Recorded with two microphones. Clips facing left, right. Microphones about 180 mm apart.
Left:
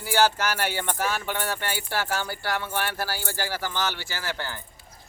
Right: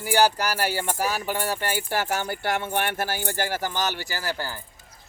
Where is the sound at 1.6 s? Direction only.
45° right (ahead or behind).